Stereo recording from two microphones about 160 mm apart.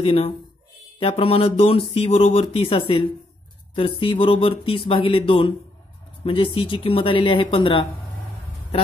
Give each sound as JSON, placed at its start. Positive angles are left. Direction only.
{"t": 0.0, "sound": "speech", "side_deg": 40}